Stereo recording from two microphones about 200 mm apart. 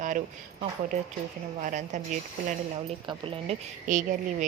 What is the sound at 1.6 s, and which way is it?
Speech, 40° right (ahead or behind).